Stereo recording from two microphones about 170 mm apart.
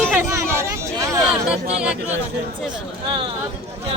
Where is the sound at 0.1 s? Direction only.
15° right (ahead or behind).